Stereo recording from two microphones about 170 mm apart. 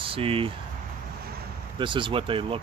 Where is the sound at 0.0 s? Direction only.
35° right (ahead or behind).